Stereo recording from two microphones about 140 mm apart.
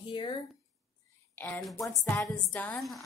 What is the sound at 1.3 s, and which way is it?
A woman's voice, 20° left (ahead or behind).